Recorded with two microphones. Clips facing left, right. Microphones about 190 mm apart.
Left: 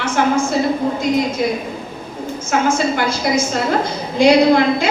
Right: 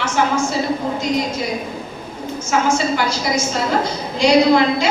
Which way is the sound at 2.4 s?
55° left (ahead or behind).